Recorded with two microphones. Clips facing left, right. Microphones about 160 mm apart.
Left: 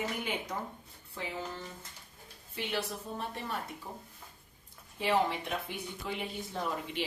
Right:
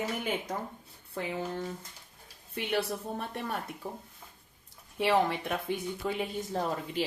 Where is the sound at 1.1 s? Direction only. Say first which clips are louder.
Right 5 dB; 55° right (ahead or behind).